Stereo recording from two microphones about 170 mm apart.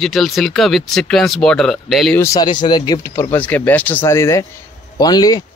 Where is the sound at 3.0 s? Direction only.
15° left (ahead or behind).